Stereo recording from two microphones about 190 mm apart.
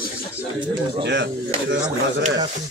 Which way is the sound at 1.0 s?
70° right (ahead or behind).